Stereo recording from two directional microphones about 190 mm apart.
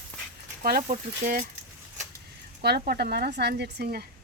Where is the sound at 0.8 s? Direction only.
35° right (ahead or behind).